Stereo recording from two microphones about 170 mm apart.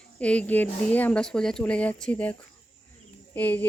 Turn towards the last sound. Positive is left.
turn(degrees=10)  # may be behind; listen again after turning